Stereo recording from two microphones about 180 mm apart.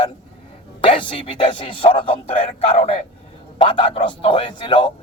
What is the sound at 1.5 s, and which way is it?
Speech, 30° left (ahead or behind).